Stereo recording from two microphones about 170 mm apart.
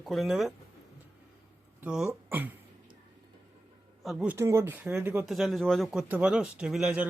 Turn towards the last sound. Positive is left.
turn(degrees=-5)  # may be behind; listen again after turning